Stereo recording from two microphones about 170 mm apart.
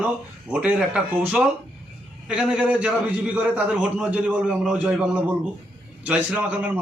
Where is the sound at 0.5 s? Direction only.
5° right (ahead or behind).